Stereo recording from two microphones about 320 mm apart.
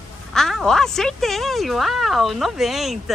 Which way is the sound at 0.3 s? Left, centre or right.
Centre.